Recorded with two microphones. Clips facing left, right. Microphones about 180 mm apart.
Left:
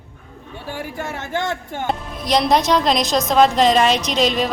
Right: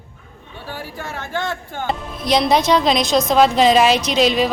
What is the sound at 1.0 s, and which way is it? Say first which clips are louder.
Speech: left 1 dB; 25° left (ahead or behind).